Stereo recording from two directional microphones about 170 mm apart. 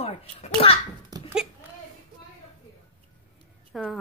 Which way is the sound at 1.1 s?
25° right (ahead or behind).